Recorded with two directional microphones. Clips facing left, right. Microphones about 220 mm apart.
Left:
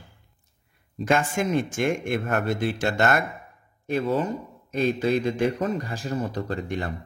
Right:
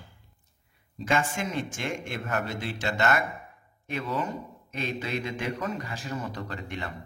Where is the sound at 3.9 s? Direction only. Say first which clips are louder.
Left 7 dB; 35° left (ahead or behind).